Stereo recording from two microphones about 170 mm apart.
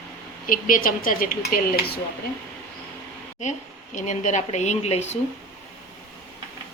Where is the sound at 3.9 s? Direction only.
45° left (ahead or behind).